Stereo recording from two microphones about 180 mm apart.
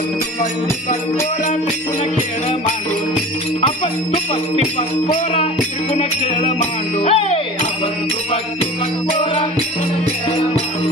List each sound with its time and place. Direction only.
3.6 s jingle bell: 30° left (ahead or behind)
5.0 s music: 35° left (ahead or behind)
9.2 s music: 30° left (ahead or behind)